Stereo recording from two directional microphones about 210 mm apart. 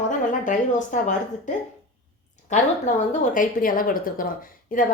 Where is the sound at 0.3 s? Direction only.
35° left (ahead or behind).